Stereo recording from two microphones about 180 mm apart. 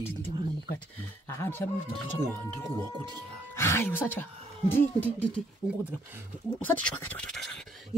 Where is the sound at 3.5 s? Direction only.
15° left (ahead or behind).